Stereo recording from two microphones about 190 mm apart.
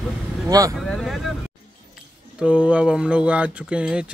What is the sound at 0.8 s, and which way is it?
Speech, centre (ahead or behind).